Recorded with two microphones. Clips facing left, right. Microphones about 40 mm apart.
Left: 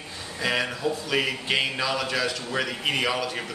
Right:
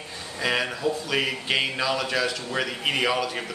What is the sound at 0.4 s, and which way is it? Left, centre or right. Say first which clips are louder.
Speech: right 1 dB; centre.